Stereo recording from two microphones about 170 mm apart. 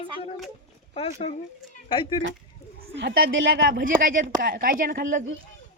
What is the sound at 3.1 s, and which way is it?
A woman's voice, 60° right (ahead or behind).